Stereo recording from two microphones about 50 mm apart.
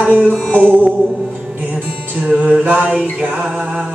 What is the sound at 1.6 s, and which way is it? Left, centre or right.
Music, right.